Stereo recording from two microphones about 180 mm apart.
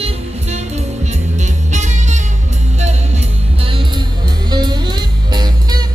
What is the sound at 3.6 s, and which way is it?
Music, 30° right (ahead or behind).